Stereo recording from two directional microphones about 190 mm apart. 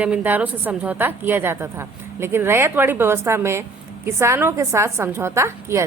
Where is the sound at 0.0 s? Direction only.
10° right (ahead or behind).